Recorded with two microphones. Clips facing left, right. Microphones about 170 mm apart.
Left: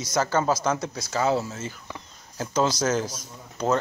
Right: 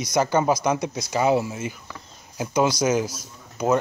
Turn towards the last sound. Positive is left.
turn(degrees=-10)  # may be behind; listen again after turning